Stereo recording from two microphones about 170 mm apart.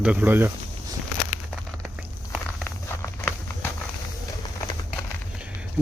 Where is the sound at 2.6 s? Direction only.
15° left (ahead or behind).